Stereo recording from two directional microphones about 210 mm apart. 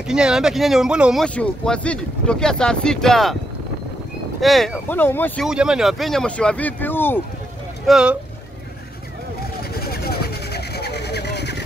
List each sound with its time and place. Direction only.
0.0 s speech: 5° right (ahead or behind)
4.4 s speech: centre (ahead or behind)
7.8 s speech: 5° right (ahead or behind)
9.6 s vehicle: 45° left (ahead or behind)